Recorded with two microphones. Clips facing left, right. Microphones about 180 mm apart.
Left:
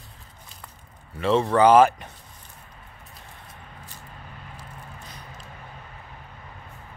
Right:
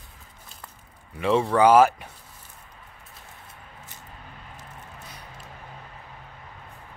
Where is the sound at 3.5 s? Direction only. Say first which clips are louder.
Left 2 dB; 25° right (ahead or behind).